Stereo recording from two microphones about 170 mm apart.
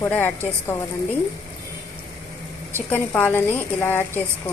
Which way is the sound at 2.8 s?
10° left (ahead or behind).